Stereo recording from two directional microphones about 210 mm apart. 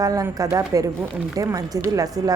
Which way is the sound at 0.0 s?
15° right (ahead or behind).